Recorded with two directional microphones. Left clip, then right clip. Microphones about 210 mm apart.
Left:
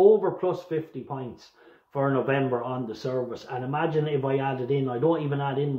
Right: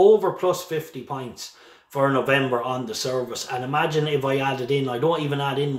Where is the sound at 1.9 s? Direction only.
5° right (ahead or behind).